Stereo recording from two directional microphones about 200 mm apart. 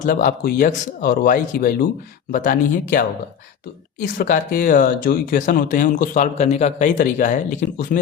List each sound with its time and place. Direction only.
0.0 s speech: 45° left (ahead or behind)
4.0 s speech: 45° left (ahead or behind)